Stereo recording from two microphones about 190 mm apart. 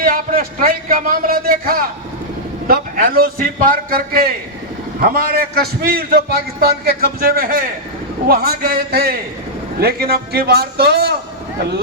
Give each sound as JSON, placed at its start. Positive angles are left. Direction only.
{"t": 0.0, "sound": "a man's voice", "side_deg": -50}